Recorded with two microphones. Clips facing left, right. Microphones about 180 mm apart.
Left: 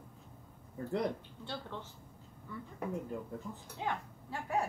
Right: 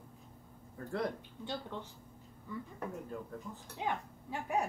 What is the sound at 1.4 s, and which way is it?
Speech, 15° right (ahead or behind).